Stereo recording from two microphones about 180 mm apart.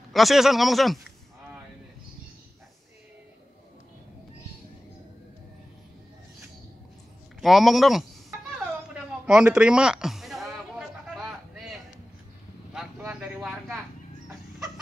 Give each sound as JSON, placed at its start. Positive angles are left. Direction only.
{"t": 0.1, "sound": "speech", "side_deg": 0}
{"t": 7.4, "sound": "speech", "side_deg": 0}
{"t": 8.9, "sound": "music", "side_deg": -5}
{"t": 13.0, "sound": "vehicle", "side_deg": -5}